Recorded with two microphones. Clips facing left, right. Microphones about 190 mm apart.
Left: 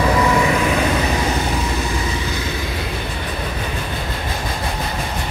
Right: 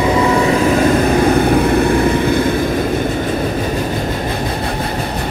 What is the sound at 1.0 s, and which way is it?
Vehicle, 55° right (ahead or behind).